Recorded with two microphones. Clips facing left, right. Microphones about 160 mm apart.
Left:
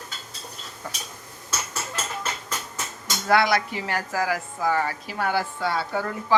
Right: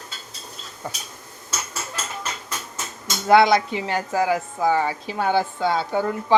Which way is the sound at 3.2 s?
25° right (ahead or behind).